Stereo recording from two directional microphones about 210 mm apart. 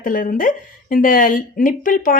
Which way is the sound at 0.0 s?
40° left (ahead or behind).